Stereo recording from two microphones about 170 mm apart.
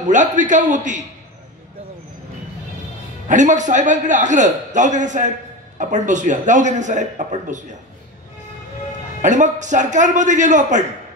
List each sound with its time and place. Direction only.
0.0 s a man's voice: 45° right (ahead or behind)
3.3 s a man's voice: 45° right (ahead or behind)
9.2 s a man's voice: 45° right (ahead or behind)